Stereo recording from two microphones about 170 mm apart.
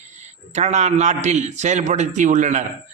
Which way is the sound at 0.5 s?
40° right (ahead or behind).